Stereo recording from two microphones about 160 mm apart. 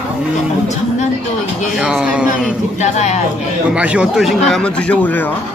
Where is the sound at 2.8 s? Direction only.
45° left (ahead or behind).